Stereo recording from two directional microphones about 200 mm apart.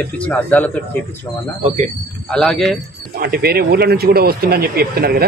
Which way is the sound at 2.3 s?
5° left (ahead or behind).